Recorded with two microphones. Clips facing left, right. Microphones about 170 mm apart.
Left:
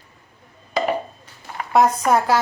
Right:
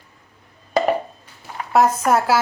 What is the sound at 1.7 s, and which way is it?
Speech, 5° right (ahead or behind).